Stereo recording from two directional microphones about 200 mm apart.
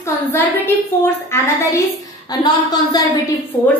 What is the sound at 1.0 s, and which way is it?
A woman's voice, 10° left (ahead or behind).